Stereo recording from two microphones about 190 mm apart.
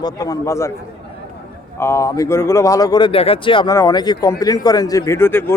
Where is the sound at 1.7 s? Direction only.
15° left (ahead or behind).